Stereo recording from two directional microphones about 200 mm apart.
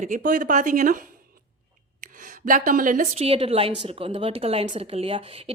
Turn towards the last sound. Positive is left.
turn(degrees=-30)  # may be behind; listen again after turning